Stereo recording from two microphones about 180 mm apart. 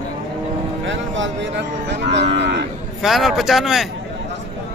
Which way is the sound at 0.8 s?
90° right.